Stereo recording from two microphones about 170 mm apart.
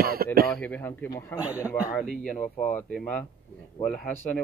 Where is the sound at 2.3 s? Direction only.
50° left (ahead or behind).